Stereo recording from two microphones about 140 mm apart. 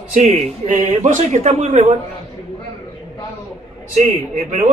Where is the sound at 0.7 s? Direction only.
60° right (ahead or behind).